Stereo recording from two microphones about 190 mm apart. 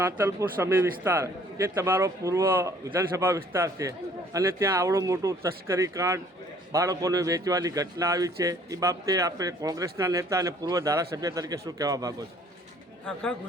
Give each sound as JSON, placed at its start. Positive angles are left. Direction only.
{"t": 0.2, "sound": "a man's voice", "side_deg": -15}